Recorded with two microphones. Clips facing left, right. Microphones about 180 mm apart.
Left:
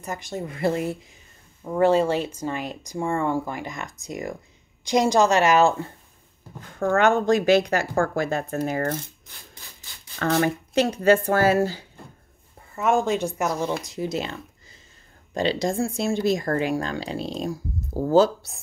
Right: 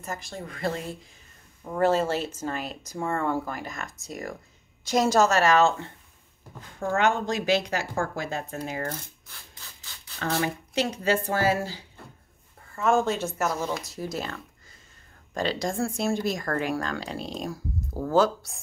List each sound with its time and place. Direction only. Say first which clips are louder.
0.3 s speech: left 7 dB; 25° left (ahead or behind)
6.8 s speech: left 5 dB; 50° left (ahead or behind)
10.1 s speech: left 6 dB; 55° left (ahead or behind)
12.9 s speech: left 2 dB; 15° left (ahead or behind)